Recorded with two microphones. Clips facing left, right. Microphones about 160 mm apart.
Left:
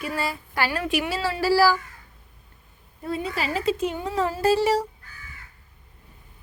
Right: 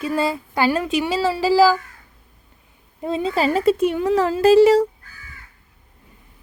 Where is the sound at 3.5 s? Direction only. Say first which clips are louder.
Right 5 dB; 55° right (ahead or behind); by 4.5 s 90° right.